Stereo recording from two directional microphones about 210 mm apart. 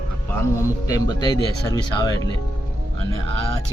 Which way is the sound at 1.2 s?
20° left (ahead or behind).